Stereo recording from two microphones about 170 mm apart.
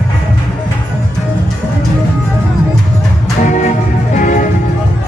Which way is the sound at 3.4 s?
45° left (ahead or behind).